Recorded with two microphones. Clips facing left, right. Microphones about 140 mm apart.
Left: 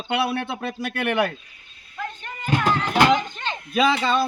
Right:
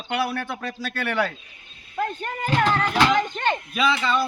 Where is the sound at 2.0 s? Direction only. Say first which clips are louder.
Right 6 dB; 45° right (ahead or behind).